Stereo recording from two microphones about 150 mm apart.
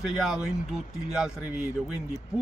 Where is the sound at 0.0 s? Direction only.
5° right (ahead or behind).